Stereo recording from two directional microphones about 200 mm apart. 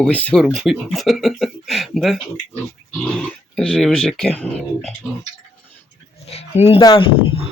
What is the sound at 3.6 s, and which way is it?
Speech, 5° left (ahead or behind).